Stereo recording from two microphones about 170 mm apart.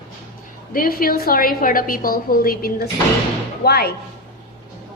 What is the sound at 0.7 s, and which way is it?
A woman's voice, 55° left (ahead or behind).